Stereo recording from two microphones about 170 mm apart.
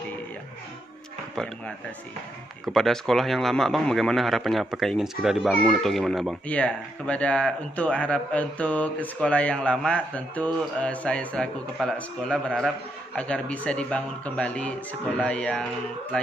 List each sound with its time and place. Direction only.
2.6 s a man's voice: centre (ahead or behind)